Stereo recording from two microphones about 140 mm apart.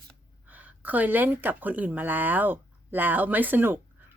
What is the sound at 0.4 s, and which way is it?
A woman's voice, 10° right (ahead or behind).